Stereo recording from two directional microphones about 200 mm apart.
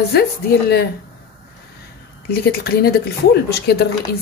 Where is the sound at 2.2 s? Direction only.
50° left (ahead or behind).